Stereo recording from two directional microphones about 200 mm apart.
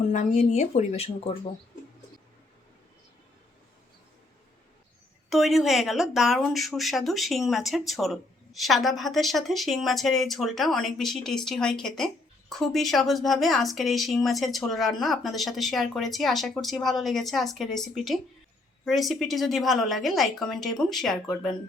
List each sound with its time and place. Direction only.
0.0 s speech: 35° left (ahead or behind)
5.3 s speech: centre (ahead or behind)